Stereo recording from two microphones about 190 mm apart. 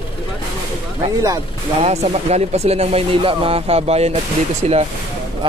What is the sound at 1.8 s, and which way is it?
Speech, 35° right (ahead or behind).